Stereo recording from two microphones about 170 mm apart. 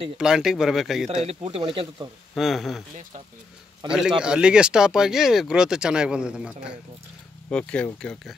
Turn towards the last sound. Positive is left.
turn(degrees=5)  # may be behind; listen again after turning